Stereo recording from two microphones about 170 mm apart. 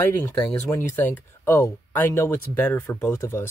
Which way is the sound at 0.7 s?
10° left (ahead or behind).